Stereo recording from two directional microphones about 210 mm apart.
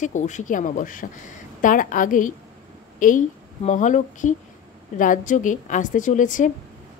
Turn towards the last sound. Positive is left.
turn(degrees=40)  # may be behind; listen again after turning